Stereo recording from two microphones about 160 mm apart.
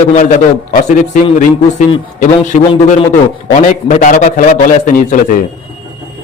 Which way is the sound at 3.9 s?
55° left (ahead or behind).